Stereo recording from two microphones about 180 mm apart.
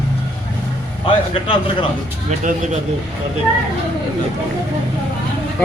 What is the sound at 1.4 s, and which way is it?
Speech, 30° left (ahead or behind).